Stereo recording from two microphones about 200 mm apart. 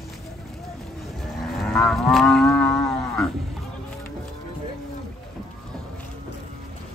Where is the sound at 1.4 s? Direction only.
Centre (ahead or behind).